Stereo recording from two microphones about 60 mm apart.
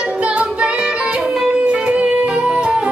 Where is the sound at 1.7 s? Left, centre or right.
Centre.